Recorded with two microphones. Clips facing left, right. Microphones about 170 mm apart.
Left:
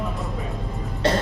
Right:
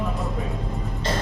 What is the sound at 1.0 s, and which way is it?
Throat clearing, 65° left (ahead or behind).